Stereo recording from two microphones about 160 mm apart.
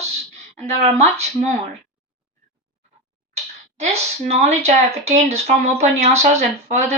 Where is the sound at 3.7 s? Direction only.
40° right (ahead or behind).